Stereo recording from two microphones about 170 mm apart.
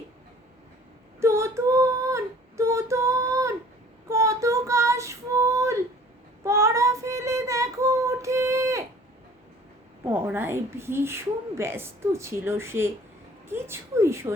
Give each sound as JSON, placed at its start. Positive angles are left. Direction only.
{"t": 1.2, "sound": "female singing", "side_deg": -15}
{"t": 4.1, "sound": "child singing", "side_deg": -20}
{"t": 10.0, "sound": "a woman's voice", "side_deg": -15}